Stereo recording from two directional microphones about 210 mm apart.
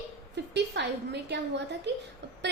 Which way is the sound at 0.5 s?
55° right (ahead or behind).